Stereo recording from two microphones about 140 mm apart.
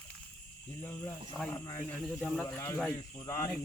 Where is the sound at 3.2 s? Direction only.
20° left (ahead or behind).